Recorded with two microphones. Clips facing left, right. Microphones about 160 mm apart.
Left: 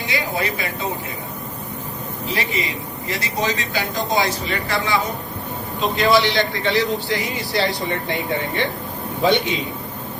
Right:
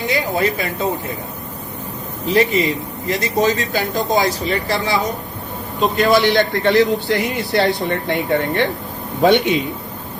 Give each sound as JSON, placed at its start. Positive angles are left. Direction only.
{"t": 0.1, "sound": "a sound", "side_deg": -45}
{"t": 2.3, "sound": "a man's voice", "side_deg": -45}
{"t": 6.0, "sound": "a man's voice", "side_deg": -50}